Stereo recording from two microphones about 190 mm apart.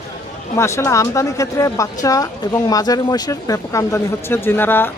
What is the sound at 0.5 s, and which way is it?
Speech, 15° left (ahead or behind).